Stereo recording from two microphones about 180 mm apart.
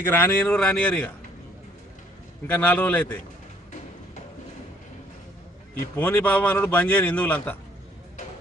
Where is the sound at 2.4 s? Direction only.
10° left (ahead or behind).